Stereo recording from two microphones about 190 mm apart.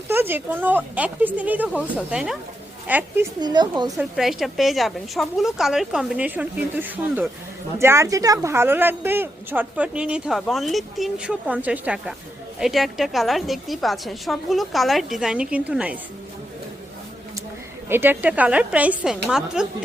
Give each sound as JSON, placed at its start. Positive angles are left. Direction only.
{"t": 0.1, "sound": "a woman's voice", "side_deg": -10}
{"t": 3.4, "sound": "speech", "side_deg": -20}
{"t": 3.9, "sound": "a woman's voice", "side_deg": 0}
{"t": 17.8, "sound": "a woman's voice", "side_deg": -10}